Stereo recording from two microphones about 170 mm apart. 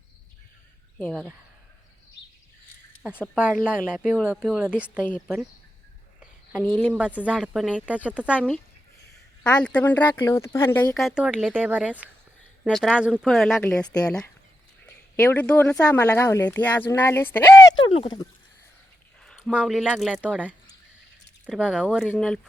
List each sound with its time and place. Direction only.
0.9 s speech: 10° left (ahead or behind)
3.0 s speech: 5° right (ahead or behind)
6.9 s speech: 10° right (ahead or behind)
9.4 s speech: 5° left (ahead or behind)
10.9 s speech: 5° right (ahead or behind); by 17.4 s 15° left (ahead or behind)
17.7 s speech: 30° left (ahead or behind)
19.2 s speech: centre (ahead or behind)
20.1 s speech: 10° right (ahead or behind)